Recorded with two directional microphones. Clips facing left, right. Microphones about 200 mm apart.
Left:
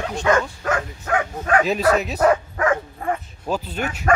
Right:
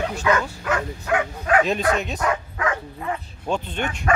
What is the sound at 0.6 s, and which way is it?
Speech, 45° left (ahead or behind).